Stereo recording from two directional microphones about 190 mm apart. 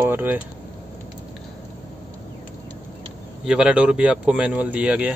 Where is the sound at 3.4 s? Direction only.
5° right (ahead or behind).